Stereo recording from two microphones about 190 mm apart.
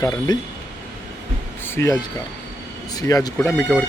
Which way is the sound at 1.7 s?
15° left (ahead or behind).